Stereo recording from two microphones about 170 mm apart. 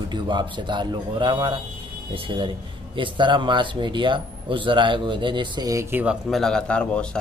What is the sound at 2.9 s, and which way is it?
Speech, 30° right (ahead or behind).